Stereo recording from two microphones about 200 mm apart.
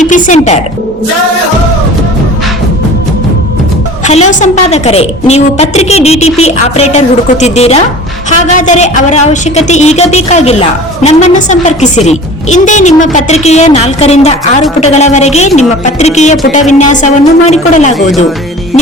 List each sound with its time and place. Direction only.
0.0 s speech: 35° left (ahead or behind)
4.0 s a woman's voice: 35° left (ahead or behind)